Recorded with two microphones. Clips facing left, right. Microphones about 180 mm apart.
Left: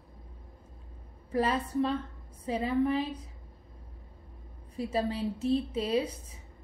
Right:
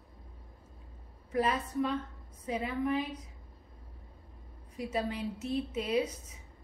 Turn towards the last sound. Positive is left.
turn(degrees=30)  # may be behind; listen again after turning